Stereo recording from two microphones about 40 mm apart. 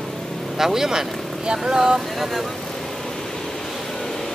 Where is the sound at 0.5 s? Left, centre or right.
Centre.